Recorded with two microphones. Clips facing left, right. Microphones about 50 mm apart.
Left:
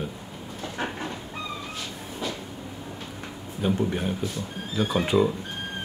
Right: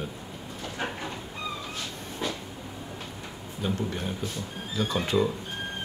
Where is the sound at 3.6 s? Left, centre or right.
Centre.